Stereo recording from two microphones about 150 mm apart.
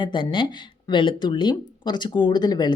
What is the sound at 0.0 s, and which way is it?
Speech, 30° left (ahead or behind).